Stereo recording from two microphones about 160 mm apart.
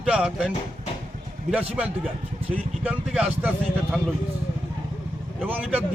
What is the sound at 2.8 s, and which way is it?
Speech, 5° right (ahead or behind).